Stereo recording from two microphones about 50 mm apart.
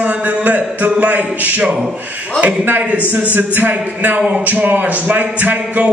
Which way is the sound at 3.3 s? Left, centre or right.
Right.